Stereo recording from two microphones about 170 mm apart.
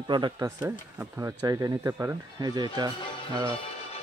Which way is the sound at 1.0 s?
15° right (ahead or behind).